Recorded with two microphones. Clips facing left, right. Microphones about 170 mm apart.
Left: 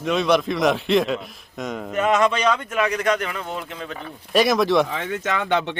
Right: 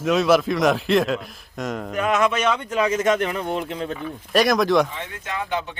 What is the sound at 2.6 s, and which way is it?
Speech, 20° right (ahead or behind).